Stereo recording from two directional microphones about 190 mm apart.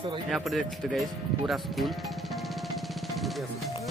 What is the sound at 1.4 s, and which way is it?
Music, centre (ahead or behind).